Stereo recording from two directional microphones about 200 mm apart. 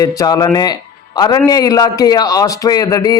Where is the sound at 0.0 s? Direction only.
20° left (ahead or behind).